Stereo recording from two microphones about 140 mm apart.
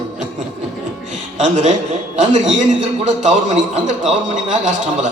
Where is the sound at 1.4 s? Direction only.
55° right (ahead or behind).